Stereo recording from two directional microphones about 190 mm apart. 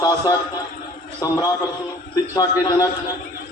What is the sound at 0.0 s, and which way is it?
A man's voice, 20° left (ahead or behind).